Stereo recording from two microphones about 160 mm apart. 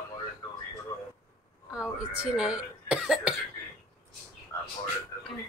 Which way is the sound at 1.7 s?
5° right (ahead or behind).